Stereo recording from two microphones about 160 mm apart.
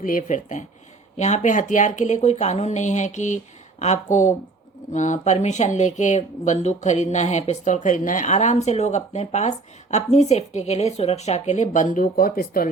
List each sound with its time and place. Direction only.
0.0 s speech: 55° left (ahead or behind)